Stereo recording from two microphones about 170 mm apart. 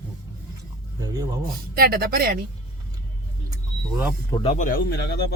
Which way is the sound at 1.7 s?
65° right (ahead or behind).